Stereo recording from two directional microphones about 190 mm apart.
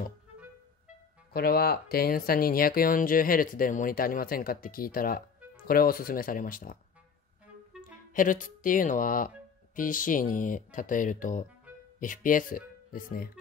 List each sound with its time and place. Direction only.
1.3 s speech: 55° left (ahead or behind)
8.1 s speech: 45° left (ahead or behind)